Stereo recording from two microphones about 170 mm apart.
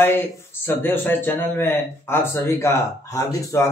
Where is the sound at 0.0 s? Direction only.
15° left (ahead or behind).